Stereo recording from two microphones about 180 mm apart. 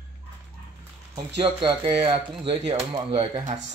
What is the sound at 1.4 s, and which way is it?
Speech, 30° right (ahead or behind).